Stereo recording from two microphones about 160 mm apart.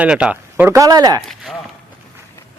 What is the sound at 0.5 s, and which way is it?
Speech, 15° right (ahead or behind).